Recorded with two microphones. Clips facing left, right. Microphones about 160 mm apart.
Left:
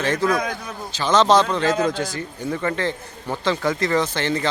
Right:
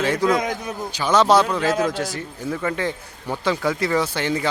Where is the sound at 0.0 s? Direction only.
10° right (ahead or behind).